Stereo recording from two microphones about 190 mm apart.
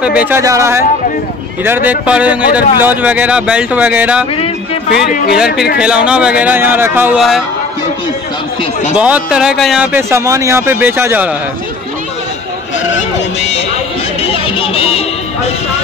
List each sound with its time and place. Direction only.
0.0 s speech: 5° right (ahead or behind)
5.3 s speech: 5° right (ahead or behind)
8.9 s speech: 5° right (ahead or behind)
9.9 s speech: 15° right (ahead or behind)
14.3 s music: 30° left (ahead or behind)